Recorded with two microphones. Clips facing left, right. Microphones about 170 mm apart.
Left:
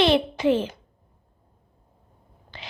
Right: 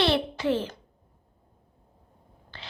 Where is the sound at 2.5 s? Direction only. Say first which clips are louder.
Left 3 dB; 15° left (ahead or behind).